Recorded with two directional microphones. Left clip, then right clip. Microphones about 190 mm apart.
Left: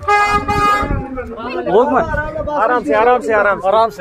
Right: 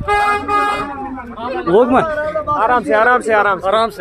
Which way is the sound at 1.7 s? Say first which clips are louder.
Right 1 dB; 45° right (ahead or behind).